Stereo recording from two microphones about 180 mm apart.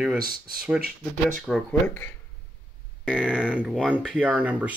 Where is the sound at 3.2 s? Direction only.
5° right (ahead or behind).